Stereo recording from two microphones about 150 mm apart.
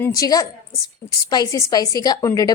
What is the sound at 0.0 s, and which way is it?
A woman's voice, 20° left (ahead or behind).